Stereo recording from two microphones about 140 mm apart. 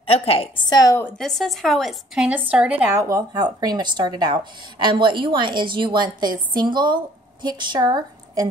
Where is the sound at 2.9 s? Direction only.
25° right (ahead or behind).